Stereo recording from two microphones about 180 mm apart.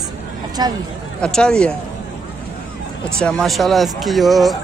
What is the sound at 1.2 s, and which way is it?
Speech, 5° left (ahead or behind).